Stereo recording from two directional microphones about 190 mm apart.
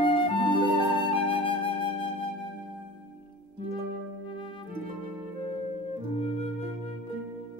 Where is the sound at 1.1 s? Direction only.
30° left (ahead or behind).